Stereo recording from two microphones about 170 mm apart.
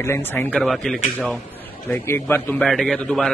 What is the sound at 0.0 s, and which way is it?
A man's voice, 15° left (ahead or behind).